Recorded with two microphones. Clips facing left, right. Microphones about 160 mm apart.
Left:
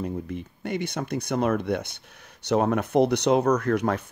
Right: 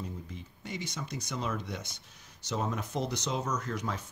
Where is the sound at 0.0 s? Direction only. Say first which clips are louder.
Left 11 dB; 60° left (ahead or behind).